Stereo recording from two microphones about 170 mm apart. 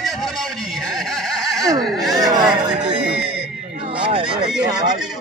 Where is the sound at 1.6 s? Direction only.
20° right (ahead or behind).